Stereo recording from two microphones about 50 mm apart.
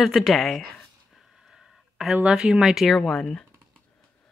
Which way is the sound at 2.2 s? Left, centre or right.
Centre.